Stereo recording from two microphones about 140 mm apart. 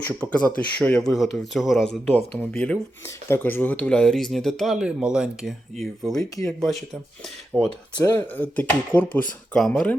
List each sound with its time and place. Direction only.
0.0 s speech: 10° left (ahead or behind)
6.1 s speech: 25° left (ahead or behind)
6.6 s speech: centre (ahead or behind)